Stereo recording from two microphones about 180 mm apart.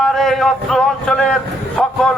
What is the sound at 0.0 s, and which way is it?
A man's voice, centre (ahead or behind).